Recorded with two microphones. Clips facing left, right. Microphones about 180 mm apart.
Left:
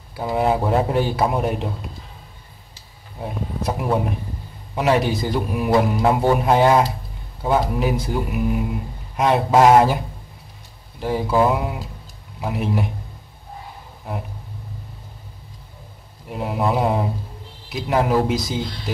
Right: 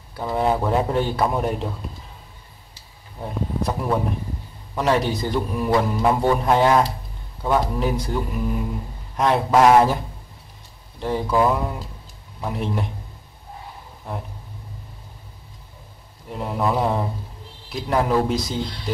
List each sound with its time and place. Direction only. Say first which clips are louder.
0.1 s a man's voice: left 2 dB; 10° left (ahead or behind)
3.2 s a man's voice: right 1 dB; 10° left (ahead or behind)
9.5 s speech: left 1 dB; 20° left (ahead or behind)
11.0 s a man's voice: left 1 dB; 5° left (ahead or behind)
16.3 s a man's voice: left 1 dB; 10° left (ahead or behind)